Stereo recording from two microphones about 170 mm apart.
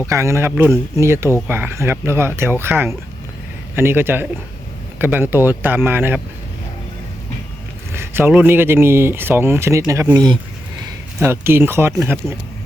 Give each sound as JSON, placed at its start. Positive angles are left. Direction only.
{"t": 0.0, "sound": "speech", "side_deg": -15}
{"t": 7.9, "sound": "speech", "side_deg": -10}